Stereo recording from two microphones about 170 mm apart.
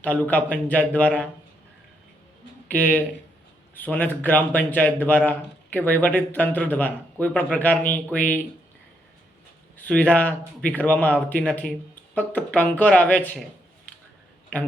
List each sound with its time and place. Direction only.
0.0 s speech: 10° left (ahead or behind)
2.6 s a man's voice: 10° left (ahead or behind)
9.7 s speech: 10° left (ahead or behind)